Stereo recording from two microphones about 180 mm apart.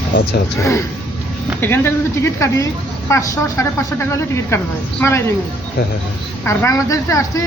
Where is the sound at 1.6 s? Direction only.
15° left (ahead or behind).